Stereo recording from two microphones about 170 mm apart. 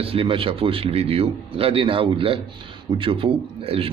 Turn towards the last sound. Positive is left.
turn(degrees=-35)  # may be behind; listen again after turning